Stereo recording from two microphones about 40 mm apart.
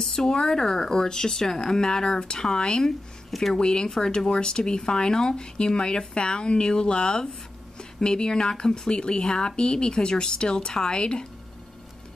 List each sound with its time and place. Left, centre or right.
0.0 s speech: centre
2.8 s speech: centre
3.5 s speech: centre